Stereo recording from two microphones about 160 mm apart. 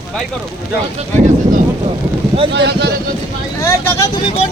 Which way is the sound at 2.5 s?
90° right.